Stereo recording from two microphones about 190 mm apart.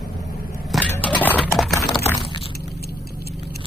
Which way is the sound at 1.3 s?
Centre (ahead or behind).